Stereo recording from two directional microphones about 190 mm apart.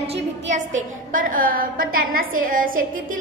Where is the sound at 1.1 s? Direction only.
45° right (ahead or behind).